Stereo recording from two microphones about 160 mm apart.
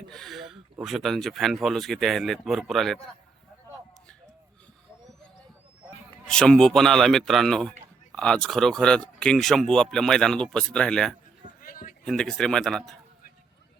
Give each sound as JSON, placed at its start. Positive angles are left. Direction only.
{"t": 0.1, "sound": "speech", "side_deg": 0}
{"t": 6.2, "sound": "speech", "side_deg": 5}
{"t": 11.6, "sound": "a sound", "side_deg": 60}
{"t": 12.0, "sound": "speech", "side_deg": 5}